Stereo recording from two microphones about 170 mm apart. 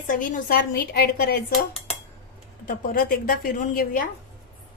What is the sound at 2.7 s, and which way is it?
A woman's voice, 55° left (ahead or behind).